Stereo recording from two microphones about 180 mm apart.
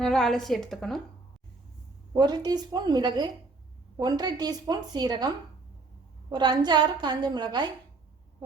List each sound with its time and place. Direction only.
0.0 s a woman's voice: centre (ahead or behind)
2.1 s a woman's voice: 25° right (ahead or behind)
6.3 s a woman's voice: 25° right (ahead or behind)